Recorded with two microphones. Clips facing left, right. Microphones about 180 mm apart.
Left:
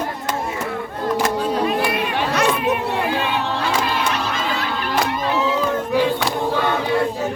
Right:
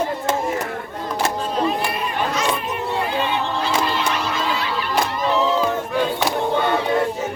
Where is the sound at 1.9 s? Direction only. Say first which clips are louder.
Left 2 dB; 65° left (ahead or behind).